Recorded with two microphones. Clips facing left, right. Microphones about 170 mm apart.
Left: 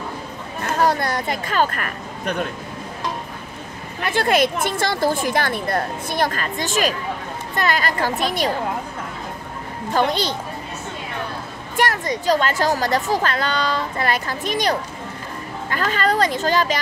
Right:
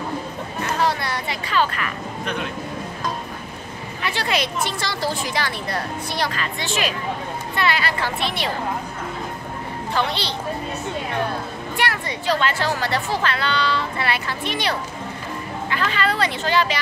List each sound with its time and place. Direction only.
0.6 s a sound: 45° left (ahead or behind)
4.0 s speech: 50° left (ahead or behind)
9.9 s speech: 45° left (ahead or behind)
11.7 s speech: 45° left (ahead or behind)